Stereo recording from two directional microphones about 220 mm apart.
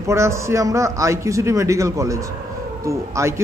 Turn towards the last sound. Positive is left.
turn(degrees=-15)  # may be behind; listen again after turning